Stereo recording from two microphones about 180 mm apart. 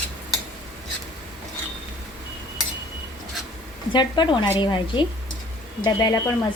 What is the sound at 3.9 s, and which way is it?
Speech, 25° left (ahead or behind).